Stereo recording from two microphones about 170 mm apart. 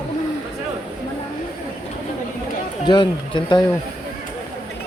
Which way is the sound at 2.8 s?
30° left (ahead or behind).